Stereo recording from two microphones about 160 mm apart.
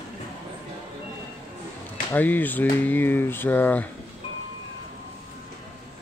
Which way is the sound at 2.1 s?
10° left (ahead or behind).